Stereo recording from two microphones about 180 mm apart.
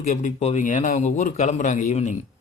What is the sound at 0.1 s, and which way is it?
Speech, 40° left (ahead or behind).